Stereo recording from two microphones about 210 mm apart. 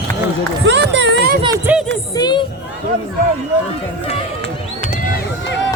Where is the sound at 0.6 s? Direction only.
55° right (ahead or behind).